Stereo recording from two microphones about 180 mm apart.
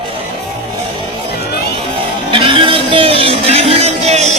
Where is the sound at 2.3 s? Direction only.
30° right (ahead or behind).